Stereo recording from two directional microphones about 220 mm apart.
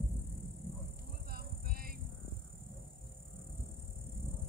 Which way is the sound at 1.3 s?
40° right (ahead or behind).